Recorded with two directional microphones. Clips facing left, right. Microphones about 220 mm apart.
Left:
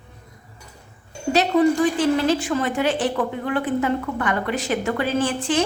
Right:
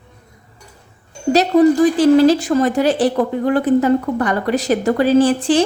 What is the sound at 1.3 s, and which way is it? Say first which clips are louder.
A woman's voice: right 6 dB; 40° right (ahead or behind).